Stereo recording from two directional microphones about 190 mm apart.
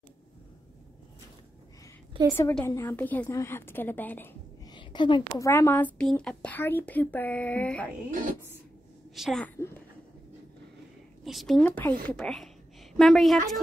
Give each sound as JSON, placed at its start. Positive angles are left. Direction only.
{"t": 2.3, "sound": "a woman's voice", "side_deg": 10}
{"t": 4.7, "sound": "a woman's voice", "side_deg": 25}
{"t": 8.1, "sound": "a woman's voice", "side_deg": -45}
{"t": 9.1, "sound": "a woman's voice", "side_deg": 0}
{"t": 9.6, "sound": "speech", "side_deg": 15}
{"t": 11.2, "sound": "a woman's voice", "side_deg": 0}